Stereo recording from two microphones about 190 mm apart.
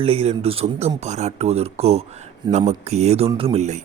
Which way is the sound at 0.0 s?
30° right (ahead or behind).